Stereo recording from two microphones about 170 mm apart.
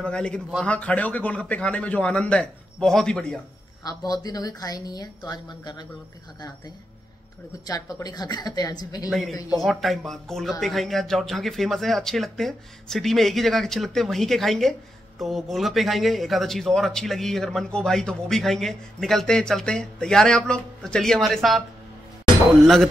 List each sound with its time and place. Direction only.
0.0 s speech: 5° left (ahead or behind)
3.8 s a woman's voice: 20° left (ahead or behind)
7.6 s a woman's voice: 20° left (ahead or behind)
9.1 s speech: centre (ahead or behind)